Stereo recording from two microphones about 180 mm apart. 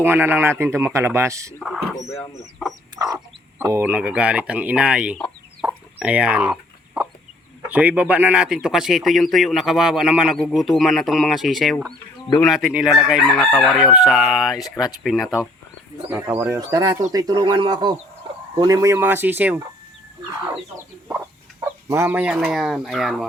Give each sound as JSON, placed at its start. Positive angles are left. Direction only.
{"t": 0.0, "sound": "a man's voice", "side_deg": -10}
{"t": 1.6, "sound": "speech", "side_deg": 0}
{"t": 2.9, "sound": "chicken", "side_deg": -20}
{"t": 3.6, "sound": "a man's voice", "side_deg": -15}
{"t": 5.6, "sound": "chicken", "side_deg": -5}
{"t": 7.7, "sound": "speech", "side_deg": -10}
{"t": 16.0, "sound": "a man's voice", "side_deg": -10}
{"t": 21.6, "sound": "speech", "side_deg": -15}